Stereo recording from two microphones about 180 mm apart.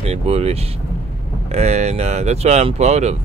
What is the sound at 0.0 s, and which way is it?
Speech, 35° right (ahead or behind).